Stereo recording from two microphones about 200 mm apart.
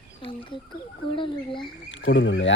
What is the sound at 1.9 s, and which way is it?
Speech, 70° left (ahead or behind).